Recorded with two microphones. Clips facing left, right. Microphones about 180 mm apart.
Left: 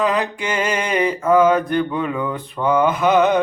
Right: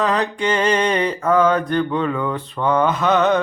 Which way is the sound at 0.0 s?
10° left (ahead or behind).